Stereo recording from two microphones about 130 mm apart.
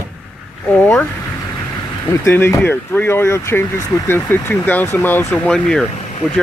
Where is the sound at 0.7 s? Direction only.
10° left (ahead or behind).